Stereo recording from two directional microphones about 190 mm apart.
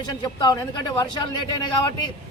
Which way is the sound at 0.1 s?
20° left (ahead or behind).